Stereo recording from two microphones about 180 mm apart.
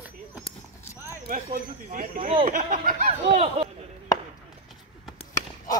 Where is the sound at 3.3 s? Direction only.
35° right (ahead or behind).